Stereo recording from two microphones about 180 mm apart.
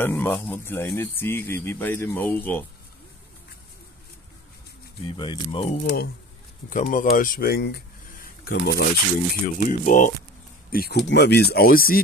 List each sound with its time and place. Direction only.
0.0 s speech: 10° left (ahead or behind)
5.0 s speech: 25° left (ahead or behind)
6.7 s speech: 45° left (ahead or behind)
11.1 s speech: 70° left (ahead or behind)